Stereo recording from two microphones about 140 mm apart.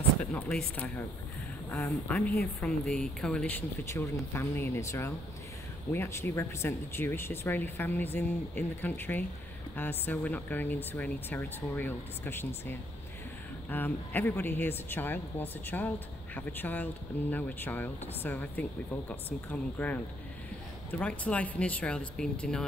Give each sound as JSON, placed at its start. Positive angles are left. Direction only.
{"t": 0.2, "sound": "speech", "side_deg": 10}
{"t": 21.0, "sound": "speech", "side_deg": 10}